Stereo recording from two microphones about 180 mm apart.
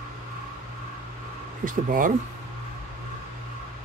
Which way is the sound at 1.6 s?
50° right (ahead or behind).